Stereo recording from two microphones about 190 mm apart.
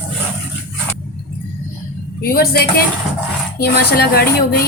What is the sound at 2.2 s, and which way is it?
A woman's voice, 55° left (ahead or behind).